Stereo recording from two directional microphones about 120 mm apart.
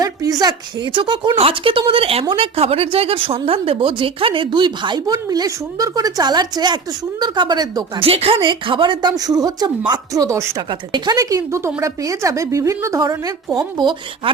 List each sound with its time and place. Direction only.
0.0 s a woman's voice: 30° right (ahead or behind)
7.9 s a woman's voice: 55° right (ahead or behind)
10.2 s speech: 25° right (ahead or behind)
10.7 s speech: 40° right (ahead or behind)